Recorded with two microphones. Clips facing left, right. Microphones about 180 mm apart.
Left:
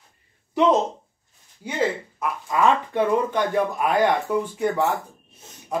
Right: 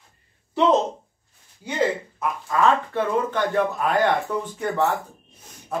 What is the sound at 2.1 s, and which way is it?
Speech, 15° left (ahead or behind).